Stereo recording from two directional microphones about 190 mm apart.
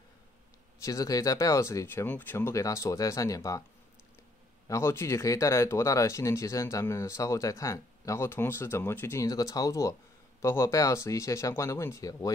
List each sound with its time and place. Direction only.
0.8 s speech: 20° left (ahead or behind)
4.6 s speech: 15° left (ahead or behind)